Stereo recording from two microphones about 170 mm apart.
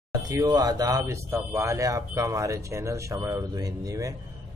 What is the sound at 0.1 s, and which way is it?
Speech, 20° right (ahead or behind).